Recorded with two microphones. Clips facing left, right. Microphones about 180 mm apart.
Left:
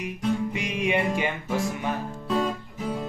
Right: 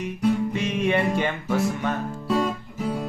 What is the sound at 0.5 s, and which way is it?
Music, 15° left (ahead or behind).